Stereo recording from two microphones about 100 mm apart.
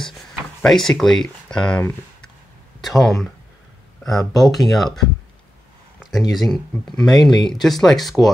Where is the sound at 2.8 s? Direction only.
Centre (ahead or behind).